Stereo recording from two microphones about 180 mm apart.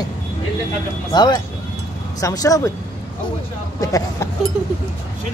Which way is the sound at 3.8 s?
20° left (ahead or behind).